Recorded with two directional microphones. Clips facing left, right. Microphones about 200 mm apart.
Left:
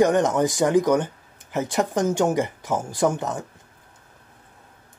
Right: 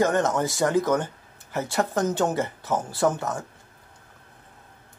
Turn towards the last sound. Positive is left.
turn(degrees=20)  # may be behind; listen again after turning